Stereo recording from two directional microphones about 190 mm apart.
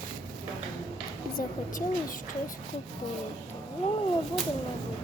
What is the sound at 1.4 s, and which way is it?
Speech, 45° left (ahead or behind).